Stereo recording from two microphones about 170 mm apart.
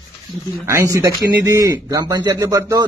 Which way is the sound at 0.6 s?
15° right (ahead or behind).